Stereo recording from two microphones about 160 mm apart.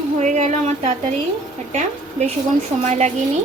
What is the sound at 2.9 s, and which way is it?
Speech, 45° right (ahead or behind).